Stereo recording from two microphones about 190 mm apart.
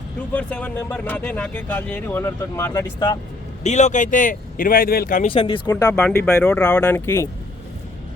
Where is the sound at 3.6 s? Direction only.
40° left (ahead or behind).